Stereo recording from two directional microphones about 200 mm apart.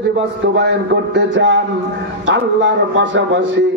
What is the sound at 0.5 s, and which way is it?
Speech, 60° right (ahead or behind).